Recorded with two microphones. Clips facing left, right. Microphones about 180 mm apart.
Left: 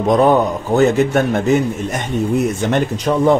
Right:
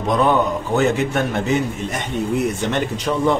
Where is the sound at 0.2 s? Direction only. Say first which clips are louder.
Left 4 dB; 40° left (ahead or behind).